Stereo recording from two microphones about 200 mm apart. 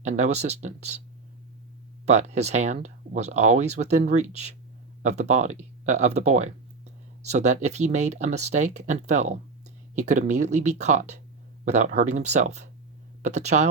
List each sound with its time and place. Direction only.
0.0 s speech: 35° right (ahead or behind)
2.0 s speech: 35° right (ahead or behind)